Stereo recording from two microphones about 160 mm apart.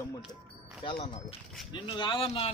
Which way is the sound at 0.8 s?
40° left (ahead or behind).